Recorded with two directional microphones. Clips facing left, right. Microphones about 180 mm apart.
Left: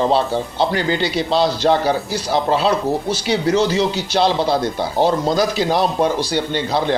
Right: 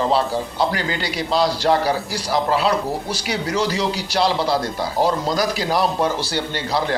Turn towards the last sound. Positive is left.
turn(degrees=20)  # may be behind; listen again after turning